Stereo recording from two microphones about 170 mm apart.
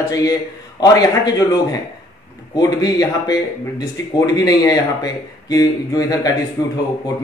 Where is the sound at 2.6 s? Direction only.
25° left (ahead or behind).